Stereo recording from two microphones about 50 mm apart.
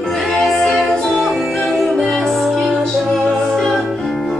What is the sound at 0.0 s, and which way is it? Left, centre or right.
Music, centre.